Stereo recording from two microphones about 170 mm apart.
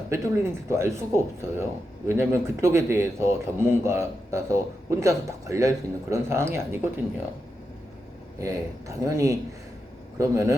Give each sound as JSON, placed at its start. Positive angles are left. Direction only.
{"t": 0.1, "sound": "speech", "side_deg": -15}
{"t": 8.4, "sound": "speech", "side_deg": -20}